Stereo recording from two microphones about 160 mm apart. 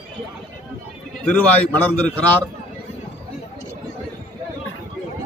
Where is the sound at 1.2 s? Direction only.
10° left (ahead or behind).